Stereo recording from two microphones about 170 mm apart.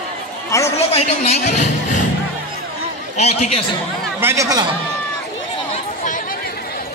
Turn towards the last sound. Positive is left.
turn(degrees=50)  # may be behind; listen again after turning